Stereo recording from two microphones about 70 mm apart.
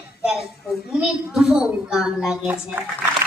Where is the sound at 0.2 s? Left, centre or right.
Centre.